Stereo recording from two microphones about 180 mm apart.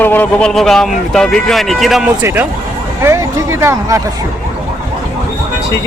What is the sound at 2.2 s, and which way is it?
Speech, 10° right (ahead or behind).